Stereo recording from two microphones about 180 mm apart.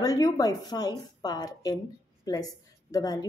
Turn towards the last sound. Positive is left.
turn(degrees=20)  # may be behind; listen again after turning